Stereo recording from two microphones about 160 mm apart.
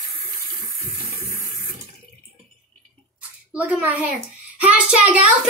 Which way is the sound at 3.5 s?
10° right (ahead or behind).